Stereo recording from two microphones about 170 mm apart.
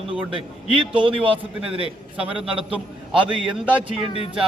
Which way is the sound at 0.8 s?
30° right (ahead or behind).